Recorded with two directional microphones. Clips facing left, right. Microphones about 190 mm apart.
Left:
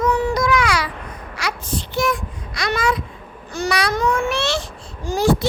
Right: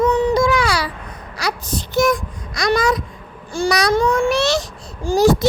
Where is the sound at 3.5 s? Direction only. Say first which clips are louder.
Right 4 dB; 35° right (ahead or behind).